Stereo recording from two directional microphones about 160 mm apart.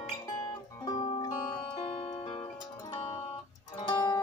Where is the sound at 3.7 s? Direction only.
25° left (ahead or behind).